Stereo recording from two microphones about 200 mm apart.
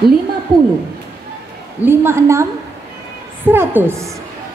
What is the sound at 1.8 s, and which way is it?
A woman's voice, 10° right (ahead or behind).